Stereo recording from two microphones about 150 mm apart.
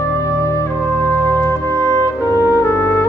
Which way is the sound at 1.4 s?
20° left (ahead or behind).